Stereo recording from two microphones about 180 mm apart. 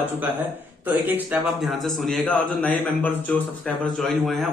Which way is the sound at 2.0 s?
5° left (ahead or behind).